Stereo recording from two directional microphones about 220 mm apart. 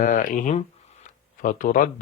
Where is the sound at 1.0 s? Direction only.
35° left (ahead or behind).